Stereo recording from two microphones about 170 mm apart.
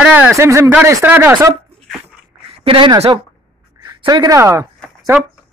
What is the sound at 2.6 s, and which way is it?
Speech, 30° right (ahead or behind).